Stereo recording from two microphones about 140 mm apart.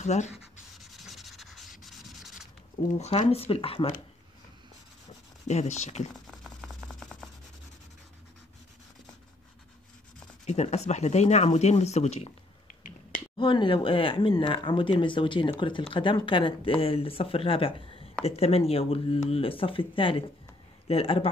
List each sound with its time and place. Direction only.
0.0 s speech: 55° left (ahead or behind)
0.7 s sanding: centre (ahead or behind)
3.0 s speech: 50° left (ahead or behind)
5.5 s speech: 55° left (ahead or behind)
6.2 s a sound: centre (ahead or behind)
10.4 s speech: 55° left (ahead or behind)
13.4 s speech: 40° left (ahead or behind)